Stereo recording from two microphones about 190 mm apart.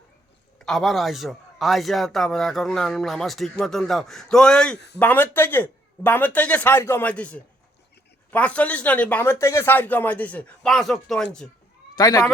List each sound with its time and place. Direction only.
0.6 s a man's voice: centre (ahead or behind)
11.9 s speech: 20° left (ahead or behind)